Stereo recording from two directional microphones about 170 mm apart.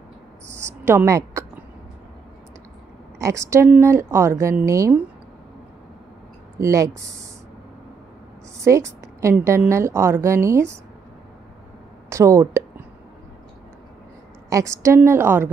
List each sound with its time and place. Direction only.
0.5 s a sound: 15° right (ahead or behind)
3.2 s a woman's voice: 20° right (ahead or behind)
6.6 s speech: 20° right (ahead or behind)
8.5 s a woman's voice: 15° right (ahead or behind)
12.1 s a sound: 15° right (ahead or behind)
14.5 s a woman's voice: 15° right (ahead or behind)